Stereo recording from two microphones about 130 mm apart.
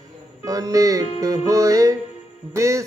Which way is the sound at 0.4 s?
25° right (ahead or behind).